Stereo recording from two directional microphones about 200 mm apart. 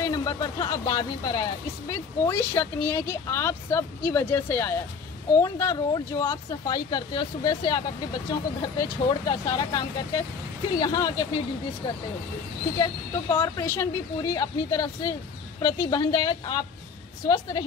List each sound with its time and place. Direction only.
0.0 s speech: 15° left (ahead or behind)
12.7 s speech: 15° left (ahead or behind)